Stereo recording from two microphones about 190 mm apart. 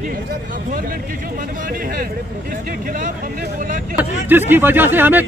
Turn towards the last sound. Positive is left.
turn(degrees=-10)  # may be behind; listen again after turning